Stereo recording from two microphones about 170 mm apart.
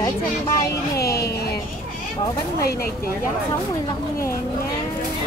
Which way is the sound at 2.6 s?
60° left (ahead or behind).